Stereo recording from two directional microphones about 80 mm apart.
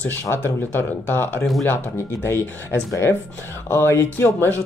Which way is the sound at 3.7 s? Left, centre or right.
Left.